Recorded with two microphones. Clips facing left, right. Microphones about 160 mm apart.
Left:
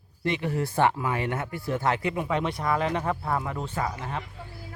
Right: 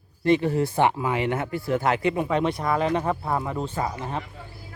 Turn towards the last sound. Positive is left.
turn(degrees=-25)  # may be behind; listen again after turning